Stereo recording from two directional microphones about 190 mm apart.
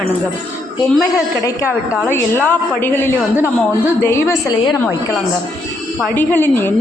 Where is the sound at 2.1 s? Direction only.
10° left (ahead or behind).